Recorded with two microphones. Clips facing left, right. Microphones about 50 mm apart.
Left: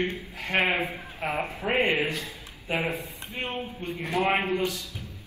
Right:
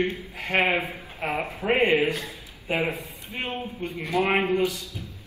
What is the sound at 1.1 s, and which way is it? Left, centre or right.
Speech, right.